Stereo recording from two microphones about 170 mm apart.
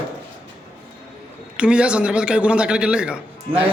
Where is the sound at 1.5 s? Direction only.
5° right (ahead or behind).